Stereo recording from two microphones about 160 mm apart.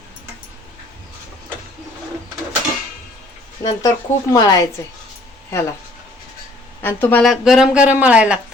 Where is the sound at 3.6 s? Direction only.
25° left (ahead or behind).